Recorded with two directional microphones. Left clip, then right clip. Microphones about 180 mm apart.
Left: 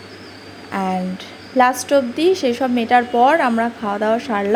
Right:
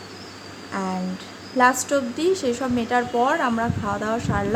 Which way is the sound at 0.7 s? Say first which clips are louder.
Left 6 dB; 20° left (ahead or behind).